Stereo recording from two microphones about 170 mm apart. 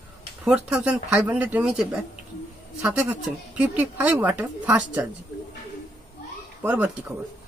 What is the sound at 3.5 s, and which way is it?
A woman's voice, 10° right (ahead or behind).